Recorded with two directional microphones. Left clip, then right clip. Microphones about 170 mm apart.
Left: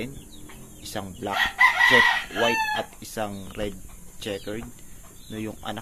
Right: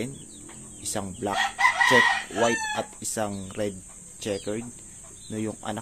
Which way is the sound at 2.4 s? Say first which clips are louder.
Left 2 dB; 25° right (ahead or behind).